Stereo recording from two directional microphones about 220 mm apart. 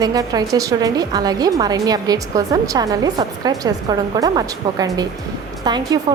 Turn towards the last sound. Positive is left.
turn(degrees=-20)  # may be behind; listen again after turning